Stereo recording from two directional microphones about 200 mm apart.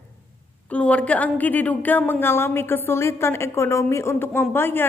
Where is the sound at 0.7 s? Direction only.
5° left (ahead or behind).